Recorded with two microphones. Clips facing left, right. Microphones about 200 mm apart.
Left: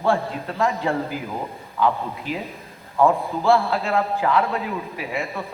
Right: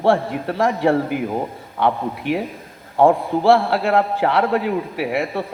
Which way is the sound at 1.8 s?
70° right (ahead or behind).